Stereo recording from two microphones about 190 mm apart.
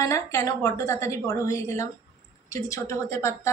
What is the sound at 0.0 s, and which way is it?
A woman's voice, 15° left (ahead or behind).